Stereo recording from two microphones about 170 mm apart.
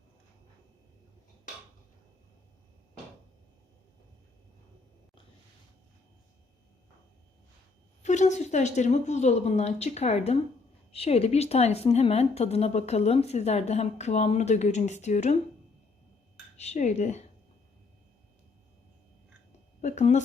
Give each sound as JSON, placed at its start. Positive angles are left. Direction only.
{"t": 8.0, "sound": "a woman's voice", "side_deg": 45}
{"t": 16.6, "sound": "a woman's voice", "side_deg": 40}
{"t": 19.8, "sound": "speech", "side_deg": 45}